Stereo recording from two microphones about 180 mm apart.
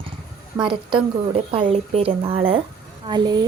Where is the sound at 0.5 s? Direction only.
25° right (ahead or behind).